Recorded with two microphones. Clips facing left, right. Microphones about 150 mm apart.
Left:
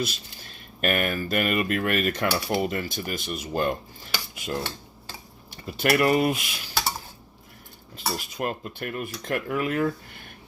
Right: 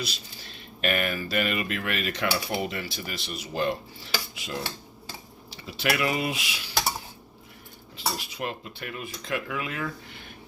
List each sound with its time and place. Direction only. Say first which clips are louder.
0.0 s speech: left 5 dB; 50° left (ahead or behind)
7.9 s speech: left 2 dB; 45° left (ahead or behind)